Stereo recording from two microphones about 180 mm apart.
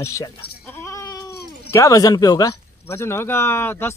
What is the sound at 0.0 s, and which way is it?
Speech, 15° left (ahead or behind).